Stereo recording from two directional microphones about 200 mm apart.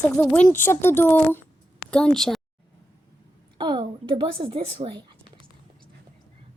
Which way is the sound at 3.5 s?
25° right (ahead or behind).